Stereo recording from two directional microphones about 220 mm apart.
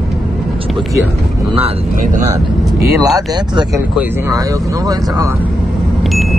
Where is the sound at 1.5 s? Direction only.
25° right (ahead or behind).